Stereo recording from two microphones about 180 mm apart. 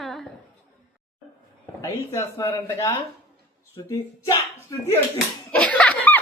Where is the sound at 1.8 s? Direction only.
15° left (ahead or behind).